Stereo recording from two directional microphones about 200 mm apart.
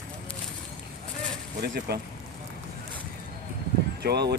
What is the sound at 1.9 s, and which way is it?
Speech, 55° right (ahead or behind).